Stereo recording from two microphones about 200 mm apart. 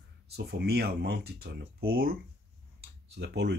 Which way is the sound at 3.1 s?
55° right (ahead or behind).